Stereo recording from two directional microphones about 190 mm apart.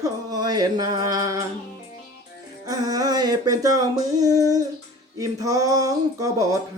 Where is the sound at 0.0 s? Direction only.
20° right (ahead or behind).